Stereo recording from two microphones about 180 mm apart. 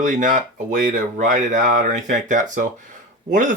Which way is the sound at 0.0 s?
45° right (ahead or behind).